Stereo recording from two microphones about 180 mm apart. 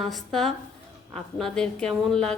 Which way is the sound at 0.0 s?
Centre (ahead or behind).